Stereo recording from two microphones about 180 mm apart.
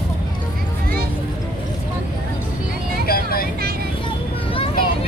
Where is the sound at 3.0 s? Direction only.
55° left (ahead or behind).